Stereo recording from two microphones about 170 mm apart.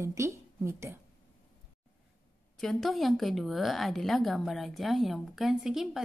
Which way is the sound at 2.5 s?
Centre (ahead or behind).